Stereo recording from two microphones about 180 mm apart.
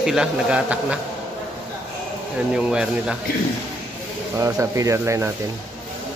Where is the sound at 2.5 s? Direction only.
5° right (ahead or behind).